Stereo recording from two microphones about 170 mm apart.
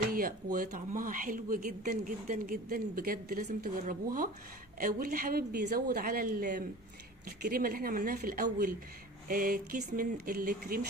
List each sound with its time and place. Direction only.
0.1 s speech: 60° right (ahead or behind)